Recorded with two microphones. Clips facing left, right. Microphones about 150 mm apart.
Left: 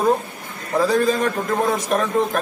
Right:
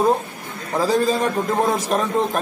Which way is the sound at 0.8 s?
30° right (ahead or behind).